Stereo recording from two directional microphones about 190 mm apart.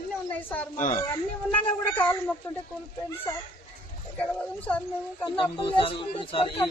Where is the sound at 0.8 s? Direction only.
45° left (ahead or behind).